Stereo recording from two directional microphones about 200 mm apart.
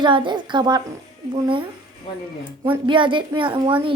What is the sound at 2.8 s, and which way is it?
A child's voice, 25° right (ahead or behind).